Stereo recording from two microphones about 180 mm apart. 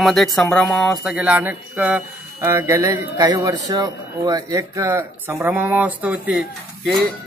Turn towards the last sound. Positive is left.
turn(degrees=-5)  # may be behind; listen again after turning